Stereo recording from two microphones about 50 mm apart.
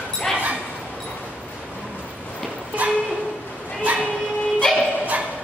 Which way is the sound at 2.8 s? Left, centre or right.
Right.